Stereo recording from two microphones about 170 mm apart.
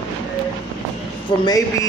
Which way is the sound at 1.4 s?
20° left (ahead or behind).